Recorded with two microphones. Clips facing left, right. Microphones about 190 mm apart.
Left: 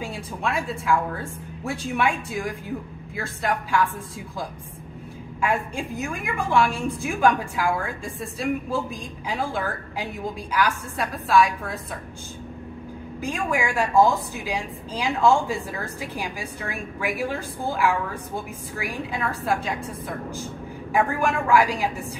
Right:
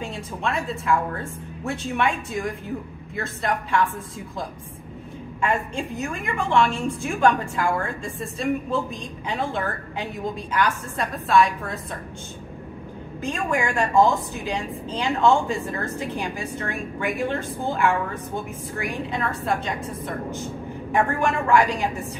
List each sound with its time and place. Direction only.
0.0 s speech: centre (ahead or behind)
5.4 s speech: centre (ahead or behind)
13.2 s speech: centre (ahead or behind)